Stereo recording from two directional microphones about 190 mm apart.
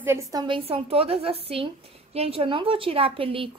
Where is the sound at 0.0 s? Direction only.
15° right (ahead or behind).